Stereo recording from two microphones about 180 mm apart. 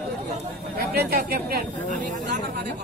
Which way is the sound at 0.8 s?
60° right (ahead or behind).